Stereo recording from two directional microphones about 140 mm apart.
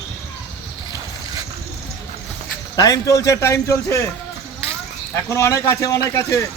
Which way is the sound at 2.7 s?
25° left (ahead or behind).